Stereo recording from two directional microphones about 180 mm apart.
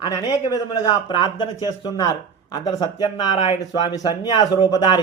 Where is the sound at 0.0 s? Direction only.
20° left (ahead or behind).